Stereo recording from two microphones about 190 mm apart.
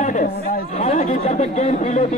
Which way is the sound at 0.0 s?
45° left (ahead or behind).